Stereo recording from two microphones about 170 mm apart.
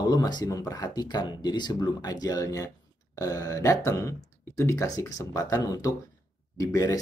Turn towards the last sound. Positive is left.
turn(degrees=20)  # may be behind; listen again after turning